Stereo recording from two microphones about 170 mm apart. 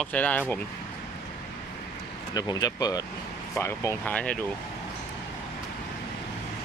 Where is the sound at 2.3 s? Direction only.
20° left (ahead or behind); by 4.4 s 5° left (ahead or behind).